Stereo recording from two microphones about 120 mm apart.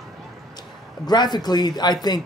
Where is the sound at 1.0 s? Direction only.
35° left (ahead or behind).